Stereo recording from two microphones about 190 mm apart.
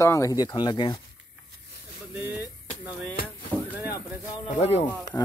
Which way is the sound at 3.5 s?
10° left (ahead or behind).